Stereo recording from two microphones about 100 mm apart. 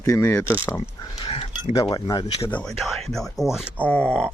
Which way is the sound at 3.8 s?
15° left (ahead or behind).